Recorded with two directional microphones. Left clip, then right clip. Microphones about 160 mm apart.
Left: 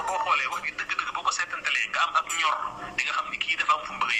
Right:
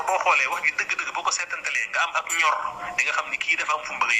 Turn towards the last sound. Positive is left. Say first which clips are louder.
# right 1 dB
turn(degrees=-40)  # may be behind; listen again after turning